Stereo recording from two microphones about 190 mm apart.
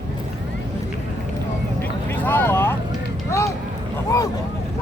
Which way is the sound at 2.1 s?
10° left (ahead or behind).